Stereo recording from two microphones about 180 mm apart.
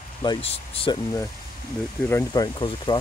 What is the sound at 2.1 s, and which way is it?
Speech, 20° left (ahead or behind).